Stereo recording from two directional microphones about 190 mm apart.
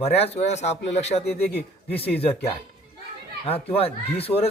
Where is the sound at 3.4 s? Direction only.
30° left (ahead or behind).